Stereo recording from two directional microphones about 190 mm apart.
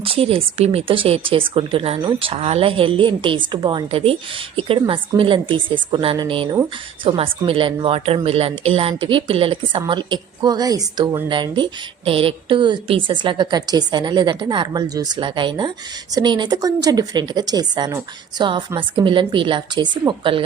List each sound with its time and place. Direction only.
0.0 s a woman's voice: 30° right (ahead or behind)